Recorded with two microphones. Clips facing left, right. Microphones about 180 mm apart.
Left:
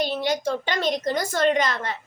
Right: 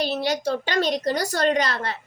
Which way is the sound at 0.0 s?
40° right (ahead or behind).